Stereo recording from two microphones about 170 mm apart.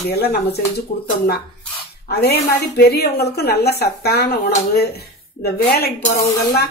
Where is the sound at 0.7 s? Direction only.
70° left (ahead or behind).